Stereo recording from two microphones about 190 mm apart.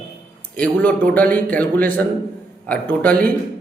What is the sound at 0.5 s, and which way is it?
A man's voice, 5° left (ahead or behind).